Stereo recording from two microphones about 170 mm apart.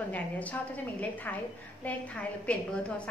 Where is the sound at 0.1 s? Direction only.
10° left (ahead or behind).